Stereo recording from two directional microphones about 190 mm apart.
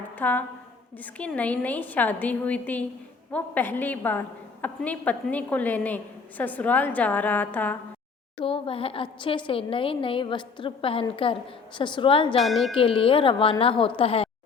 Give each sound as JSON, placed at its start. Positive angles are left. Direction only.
{"t": 0.2, "sound": "a woman's voice", "side_deg": 10}
{"t": 8.4, "sound": "a woman's voice", "side_deg": 30}
{"t": 12.4, "sound": "speech", "side_deg": 0}
{"t": 12.7, "sound": "a woman's voice", "side_deg": 30}